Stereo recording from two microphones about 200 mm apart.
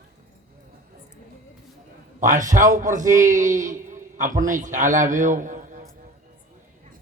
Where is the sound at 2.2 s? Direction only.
40° right (ahead or behind).